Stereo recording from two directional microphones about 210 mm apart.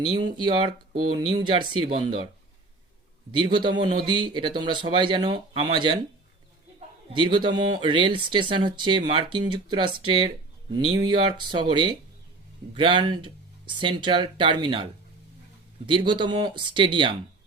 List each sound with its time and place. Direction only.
0.2 s a man's voice: 20° right (ahead or behind)
3.3 s a man's voice: 20° right (ahead or behind)
15.9 s a man's voice: 25° right (ahead or behind)